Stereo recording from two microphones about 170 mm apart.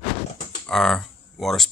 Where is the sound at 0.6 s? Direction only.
5° left (ahead or behind).